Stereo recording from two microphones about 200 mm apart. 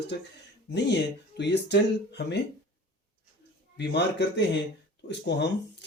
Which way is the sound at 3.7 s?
60° left (ahead or behind).